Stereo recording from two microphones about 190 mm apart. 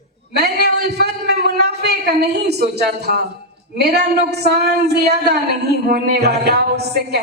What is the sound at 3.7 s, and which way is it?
Speech, 60° right (ahead or behind).